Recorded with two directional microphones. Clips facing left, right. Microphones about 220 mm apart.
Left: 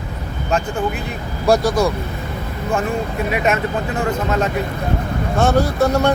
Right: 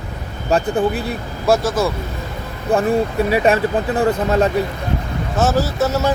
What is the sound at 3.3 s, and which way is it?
Speech, 30° right (ahead or behind).